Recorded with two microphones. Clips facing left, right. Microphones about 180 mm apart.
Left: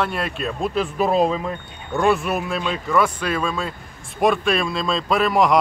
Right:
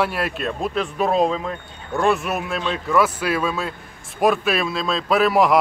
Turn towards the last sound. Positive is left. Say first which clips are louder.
# right 1 dB
turn(degrees=-5)  # may be behind; listen again after turning